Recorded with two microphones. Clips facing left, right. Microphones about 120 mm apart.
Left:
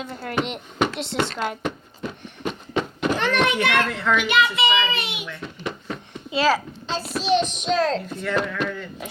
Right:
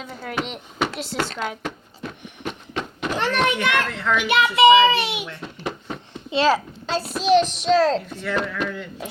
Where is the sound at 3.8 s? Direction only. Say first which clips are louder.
Left 1 dB; centre (ahead or behind).